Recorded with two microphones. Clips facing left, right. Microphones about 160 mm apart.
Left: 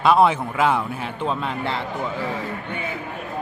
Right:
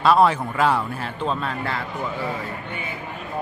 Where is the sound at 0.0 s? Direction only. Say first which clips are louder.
Even; 15° left (ahead or behind).